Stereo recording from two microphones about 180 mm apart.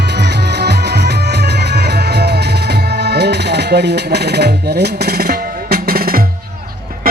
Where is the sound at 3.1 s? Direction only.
65° right (ahead or behind).